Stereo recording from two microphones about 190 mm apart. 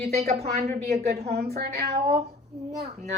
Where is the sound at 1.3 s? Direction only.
60° right (ahead or behind).